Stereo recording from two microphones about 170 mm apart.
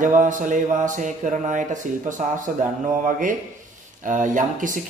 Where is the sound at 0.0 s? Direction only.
50° right (ahead or behind).